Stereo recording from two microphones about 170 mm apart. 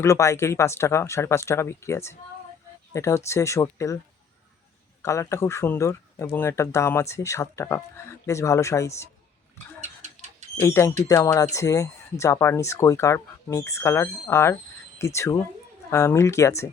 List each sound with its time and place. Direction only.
0.0 s speech: 15° left (ahead or behind)
5.0 s speech: 15° left (ahead or behind)
9.8 s rodents: 40° right (ahead or behind)
10.6 s speech: 15° left (ahead or behind)